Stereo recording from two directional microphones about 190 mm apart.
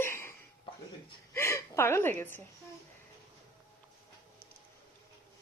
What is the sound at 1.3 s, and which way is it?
Hiccup, 15° left (ahead or behind).